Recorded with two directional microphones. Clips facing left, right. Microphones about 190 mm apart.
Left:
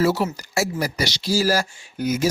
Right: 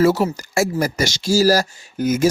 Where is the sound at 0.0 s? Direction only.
45° right (ahead or behind).